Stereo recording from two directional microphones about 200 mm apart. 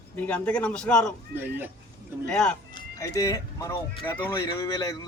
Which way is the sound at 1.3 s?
10° right (ahead or behind).